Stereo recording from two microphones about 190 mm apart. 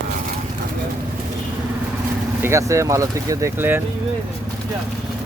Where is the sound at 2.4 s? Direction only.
15° right (ahead or behind).